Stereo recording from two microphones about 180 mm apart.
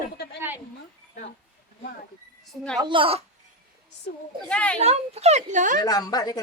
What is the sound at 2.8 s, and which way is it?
Speech, 30° right (ahead or behind).